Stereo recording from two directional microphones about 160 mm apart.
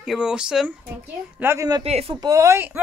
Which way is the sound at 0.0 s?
5° right (ahead or behind).